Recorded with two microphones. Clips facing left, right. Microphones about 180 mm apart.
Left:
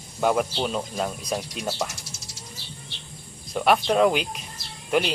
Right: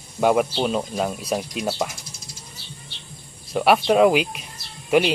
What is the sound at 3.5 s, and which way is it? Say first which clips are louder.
Speech: right 3 dB; 5° right (ahead or behind).